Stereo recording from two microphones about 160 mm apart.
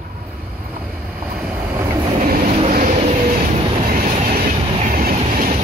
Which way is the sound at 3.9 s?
65° right (ahead or behind).